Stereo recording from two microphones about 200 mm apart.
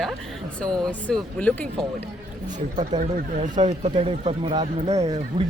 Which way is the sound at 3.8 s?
30° right (ahead or behind).